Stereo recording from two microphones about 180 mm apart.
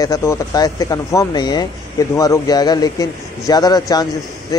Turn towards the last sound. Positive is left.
turn(degrees=20)  # may be behind; listen again after turning